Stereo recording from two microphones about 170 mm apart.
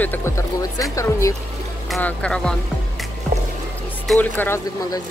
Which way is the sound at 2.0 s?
10° left (ahead or behind).